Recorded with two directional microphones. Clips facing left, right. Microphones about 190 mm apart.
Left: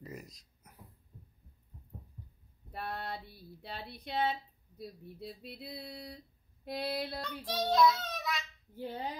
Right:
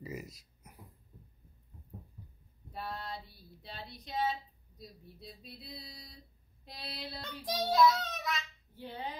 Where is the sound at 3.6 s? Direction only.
60° left (ahead or behind).